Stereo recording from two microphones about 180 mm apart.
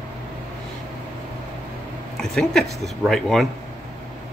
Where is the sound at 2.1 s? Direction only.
Centre (ahead or behind).